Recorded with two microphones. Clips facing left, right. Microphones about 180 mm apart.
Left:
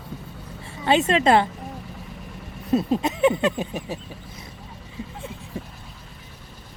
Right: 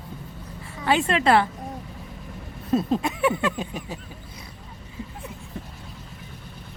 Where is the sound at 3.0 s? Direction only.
20° left (ahead or behind).